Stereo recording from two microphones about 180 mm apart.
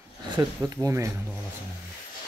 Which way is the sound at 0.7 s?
20° right (ahead or behind).